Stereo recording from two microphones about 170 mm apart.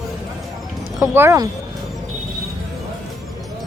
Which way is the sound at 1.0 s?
15° right (ahead or behind).